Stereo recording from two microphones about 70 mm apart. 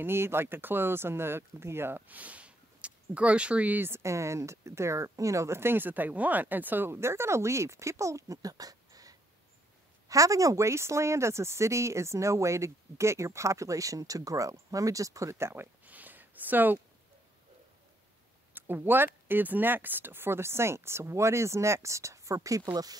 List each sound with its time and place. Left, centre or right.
0.0 s speech: right
4.0 s speech: right
18.5 s speech: right
22.7 s speech: right